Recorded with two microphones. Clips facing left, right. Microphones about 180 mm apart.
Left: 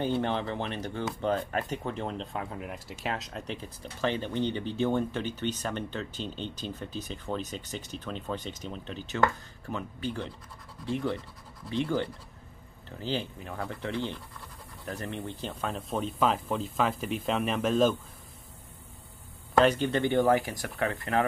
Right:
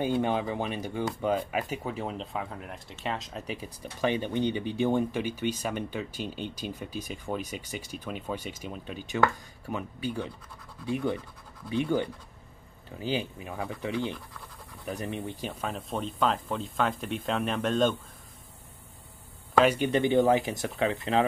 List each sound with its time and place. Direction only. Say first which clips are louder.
0.0 s speech: right 2 dB; 10° right (ahead or behind)
15.6 s speech: left 2 dB; centre (ahead or behind)
19.6 s speech: right 1 dB; 10° right (ahead or behind)